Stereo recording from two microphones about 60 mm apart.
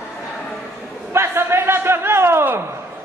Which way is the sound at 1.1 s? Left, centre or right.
Right.